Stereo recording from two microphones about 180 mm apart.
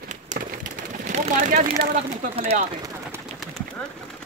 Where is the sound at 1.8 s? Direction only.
35° right (ahead or behind).